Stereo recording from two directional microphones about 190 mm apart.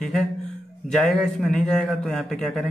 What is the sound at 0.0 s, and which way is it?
A man's voice, centre (ahead or behind).